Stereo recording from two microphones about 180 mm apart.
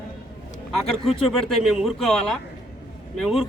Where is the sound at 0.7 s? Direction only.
Centre (ahead or behind).